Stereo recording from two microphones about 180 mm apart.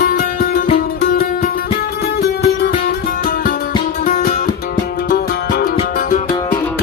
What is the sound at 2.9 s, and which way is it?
Music, 55° left (ahead or behind).